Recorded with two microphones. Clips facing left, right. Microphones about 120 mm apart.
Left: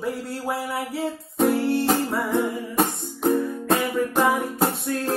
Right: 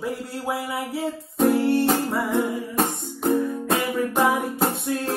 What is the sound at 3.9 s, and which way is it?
Music, centre (ahead or behind).